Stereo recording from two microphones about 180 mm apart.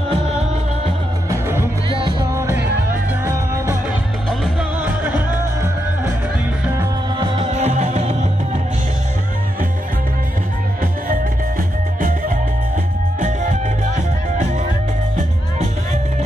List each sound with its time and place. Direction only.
1.3 s music: 10° right (ahead or behind)
1.9 s music: 30° right (ahead or behind)
2.3 s music: 15° right (ahead or behind)
4.3 s music: 5° right (ahead or behind)
7.2 s music: 25° right (ahead or behind)
13.2 s music: 45° right (ahead or behind)